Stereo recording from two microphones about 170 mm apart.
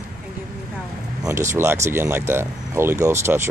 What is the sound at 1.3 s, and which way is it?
Speech, 15° right (ahead or behind).